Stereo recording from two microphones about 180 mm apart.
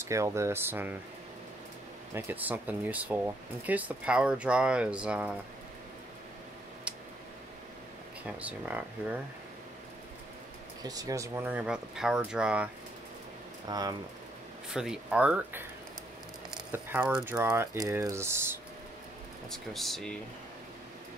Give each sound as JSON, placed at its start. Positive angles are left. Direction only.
{"t": 0.0, "sound": "speech", "side_deg": -15}
{"t": 2.1, "sound": "speech", "side_deg": -10}
{"t": 8.3, "sound": "speech", "side_deg": -5}
{"t": 10.8, "sound": "speech", "side_deg": -20}
{"t": 13.7, "sound": "speech", "side_deg": -20}
{"t": 14.7, "sound": "speech", "side_deg": -5}
{"t": 19.5, "sound": "speech", "side_deg": 0}